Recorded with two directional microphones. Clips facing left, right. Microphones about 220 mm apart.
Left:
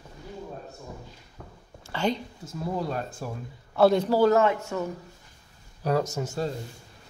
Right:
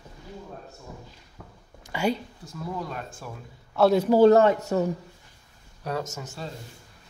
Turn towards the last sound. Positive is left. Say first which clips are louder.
# left 6 dB
turn(degrees=40)  # may be behind; listen again after turning